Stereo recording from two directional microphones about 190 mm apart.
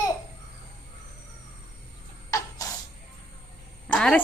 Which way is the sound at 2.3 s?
15° left (ahead or behind).